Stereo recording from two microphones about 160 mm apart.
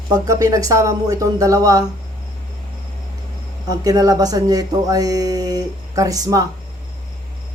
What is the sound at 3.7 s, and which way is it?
Speech, 25° right (ahead or behind).